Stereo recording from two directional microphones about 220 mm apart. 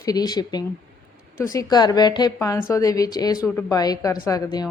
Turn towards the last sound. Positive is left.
turn(degrees=15)  # may be behind; listen again after turning